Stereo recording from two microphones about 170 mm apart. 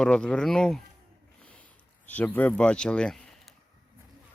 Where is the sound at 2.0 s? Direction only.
10° left (ahead or behind).